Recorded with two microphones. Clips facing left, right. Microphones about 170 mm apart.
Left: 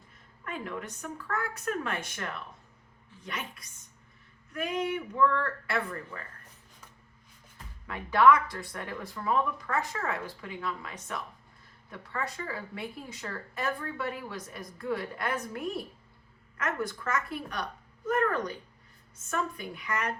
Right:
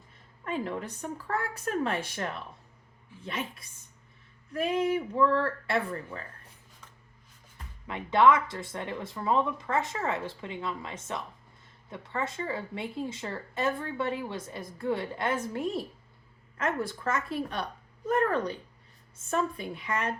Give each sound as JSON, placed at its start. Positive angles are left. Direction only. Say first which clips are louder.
{"t": 0.4, "sound": "speech", "louder": "right 4 dB", "side_deg": -30}
{"t": 7.9, "sound": "speech", "louder": "even", "side_deg": -25}